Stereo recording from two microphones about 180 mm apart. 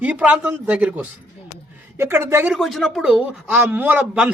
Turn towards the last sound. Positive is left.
turn(degrees=-5)  # may be behind; listen again after turning